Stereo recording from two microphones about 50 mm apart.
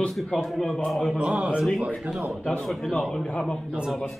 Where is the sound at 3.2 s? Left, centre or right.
Centre.